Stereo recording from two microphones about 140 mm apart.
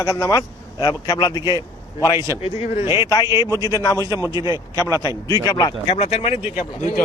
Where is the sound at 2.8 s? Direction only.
20° right (ahead or behind).